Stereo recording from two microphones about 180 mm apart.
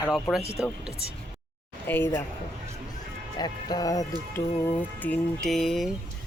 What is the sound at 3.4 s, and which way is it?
Speech, 20° left (ahead or behind).